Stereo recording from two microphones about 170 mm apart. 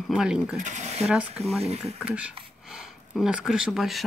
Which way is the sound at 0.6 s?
45° right (ahead or behind).